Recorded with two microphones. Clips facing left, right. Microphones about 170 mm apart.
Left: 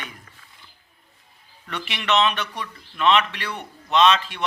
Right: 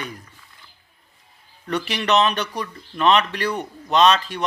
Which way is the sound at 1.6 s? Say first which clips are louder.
Right 4 dB; 40° right (ahead or behind).